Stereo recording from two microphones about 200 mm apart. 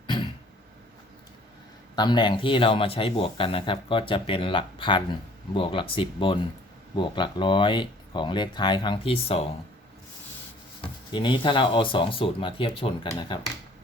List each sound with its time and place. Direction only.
2.0 s speech: 20° left (ahead or behind)
10.8 s speech: 25° left (ahead or behind)